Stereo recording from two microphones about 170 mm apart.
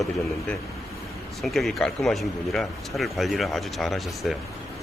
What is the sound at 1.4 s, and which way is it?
Speech, centre (ahead or behind).